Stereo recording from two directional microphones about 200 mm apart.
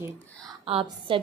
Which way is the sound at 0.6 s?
25° right (ahead or behind).